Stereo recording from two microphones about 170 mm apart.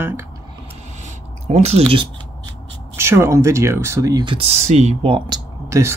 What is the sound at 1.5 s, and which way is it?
Speech, 40° right (ahead or behind).